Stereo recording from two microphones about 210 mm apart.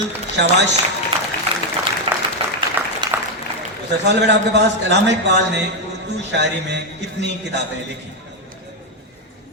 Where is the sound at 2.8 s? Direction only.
10° right (ahead or behind).